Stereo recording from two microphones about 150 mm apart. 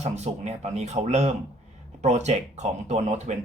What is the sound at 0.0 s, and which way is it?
Speech, 50° right (ahead or behind).